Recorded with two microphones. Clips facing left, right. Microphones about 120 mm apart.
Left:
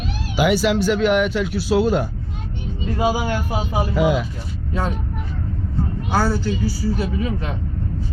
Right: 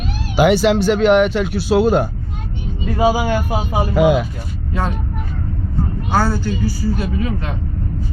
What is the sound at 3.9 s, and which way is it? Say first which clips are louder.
Speech: right 6 dB; 70° right (ahead or behind).